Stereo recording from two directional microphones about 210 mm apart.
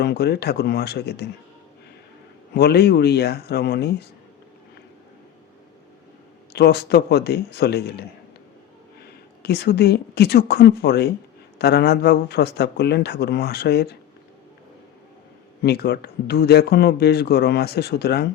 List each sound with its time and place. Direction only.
0.0 s speech: 50° left (ahead or behind)
2.6 s speech: 50° left (ahead or behind)
6.5 s speech: 50° left (ahead or behind)
9.4 s speech: 50° left (ahead or behind)
15.6 s speech: 50° left (ahead or behind)